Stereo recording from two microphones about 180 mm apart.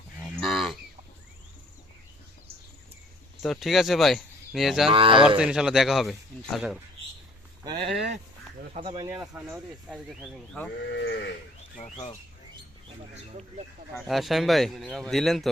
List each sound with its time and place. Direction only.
0.2 s cattle: centre (ahead or behind)
3.4 s speech: centre (ahead or behind)
4.9 s speech: 30° right (ahead or behind)
5.4 s speech: 5° right (ahead or behind)
7.6 s speech: 25° right (ahead or behind)
9.0 s speech: 10° right (ahead or behind)
9.9 s speech: centre (ahead or behind)
10.8 s speech: 75° left (ahead or behind)
14.1 s speech: centre (ahead or behind)